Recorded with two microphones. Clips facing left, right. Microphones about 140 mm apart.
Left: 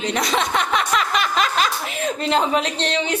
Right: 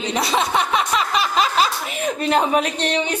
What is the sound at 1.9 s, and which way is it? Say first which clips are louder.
Speech: right 1 dB; 15° right (ahead or behind).